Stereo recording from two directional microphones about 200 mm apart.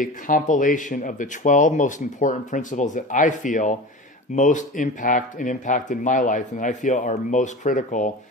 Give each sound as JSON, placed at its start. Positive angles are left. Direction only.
{"t": 0.0, "sound": "speech", "side_deg": 40}